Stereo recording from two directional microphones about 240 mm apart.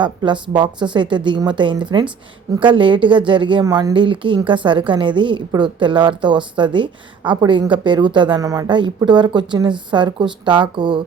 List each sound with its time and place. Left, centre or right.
0.0 s a woman's voice: centre